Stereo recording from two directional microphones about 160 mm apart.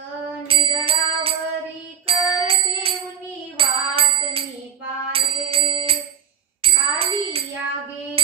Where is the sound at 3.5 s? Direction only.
35° right (ahead or behind).